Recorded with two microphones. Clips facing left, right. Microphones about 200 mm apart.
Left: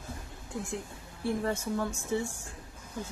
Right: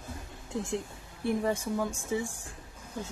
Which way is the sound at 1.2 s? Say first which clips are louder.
Right 2 dB; 15° right (ahead or behind).